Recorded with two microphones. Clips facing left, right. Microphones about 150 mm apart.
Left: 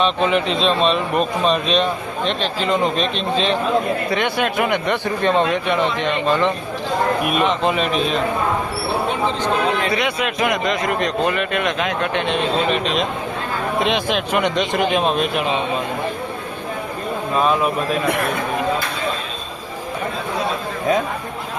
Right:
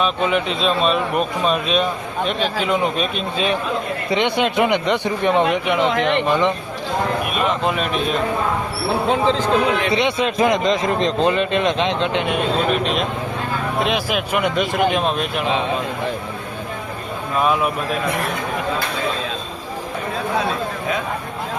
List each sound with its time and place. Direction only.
0.0 s speech: 5° right (ahead or behind)
4.1 s speech: 20° right (ahead or behind)
7.4 s speech: centre (ahead or behind)
9.9 s a man's voice: 25° right (ahead or behind); by 15.4 s centre (ahead or behind)
17.4 s speech: 5° right (ahead or behind)